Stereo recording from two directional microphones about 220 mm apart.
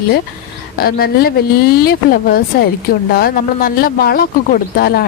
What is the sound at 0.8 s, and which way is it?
Speech, 45° left (ahead or behind).